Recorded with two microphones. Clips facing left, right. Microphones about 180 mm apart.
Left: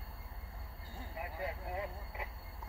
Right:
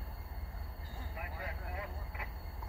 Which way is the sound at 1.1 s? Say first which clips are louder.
Left 5 dB; 25° left (ahead or behind).